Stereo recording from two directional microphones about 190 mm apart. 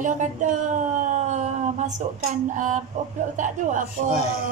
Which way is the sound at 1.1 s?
40° right (ahead or behind).